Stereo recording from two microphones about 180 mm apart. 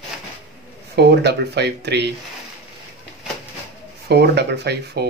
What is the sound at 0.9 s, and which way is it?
Speech, 65° right (ahead or behind).